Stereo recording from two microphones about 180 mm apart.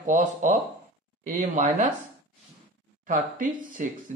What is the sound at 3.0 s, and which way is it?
Speech, 50° right (ahead or behind).